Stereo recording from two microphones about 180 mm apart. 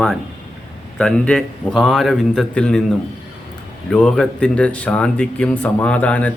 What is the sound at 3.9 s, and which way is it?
Speech, 5° left (ahead or behind).